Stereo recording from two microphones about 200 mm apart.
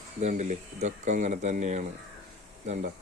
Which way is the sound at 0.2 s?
35° right (ahead or behind).